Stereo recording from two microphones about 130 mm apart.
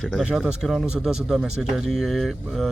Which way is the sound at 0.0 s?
5° right (ahead or behind).